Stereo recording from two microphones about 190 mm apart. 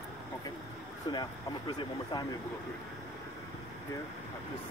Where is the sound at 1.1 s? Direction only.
20° left (ahead or behind).